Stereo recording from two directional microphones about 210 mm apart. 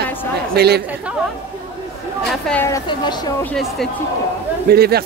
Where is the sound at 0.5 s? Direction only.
50° right (ahead or behind).